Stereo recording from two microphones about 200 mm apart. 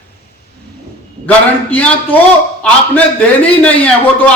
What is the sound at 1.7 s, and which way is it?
A man's voice, 10° left (ahead or behind).